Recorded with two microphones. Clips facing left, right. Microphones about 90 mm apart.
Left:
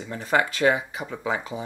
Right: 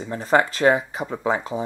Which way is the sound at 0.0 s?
35° right (ahead or behind).